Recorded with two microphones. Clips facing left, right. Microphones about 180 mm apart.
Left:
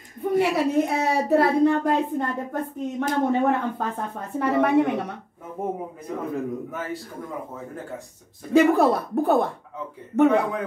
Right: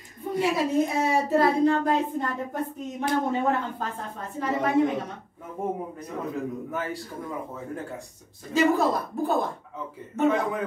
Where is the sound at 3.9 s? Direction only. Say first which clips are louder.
Left 5 dB; 60° left (ahead or behind).